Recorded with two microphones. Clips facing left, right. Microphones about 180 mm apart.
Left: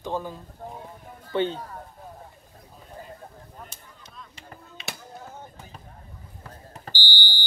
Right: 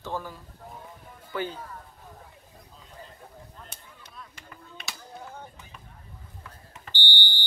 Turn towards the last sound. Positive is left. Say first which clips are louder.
# left 1 dB
turn(degrees=-20)  # may be behind; listen again after turning